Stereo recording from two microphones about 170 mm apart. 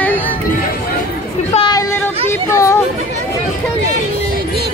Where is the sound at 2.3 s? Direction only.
15° left (ahead or behind).